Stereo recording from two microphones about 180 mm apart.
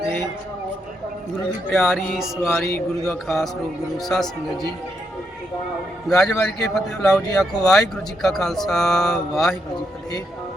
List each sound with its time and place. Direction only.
1.7 s speech: centre (ahead or behind)
6.1 s speech: 5° left (ahead or behind)
7.3 s speech: 20° left (ahead or behind)
7.7 s speech: centre (ahead or behind)